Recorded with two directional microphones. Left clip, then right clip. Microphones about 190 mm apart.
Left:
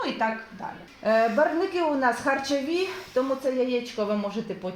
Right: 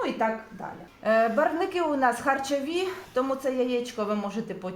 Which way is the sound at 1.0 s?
35° left (ahead or behind).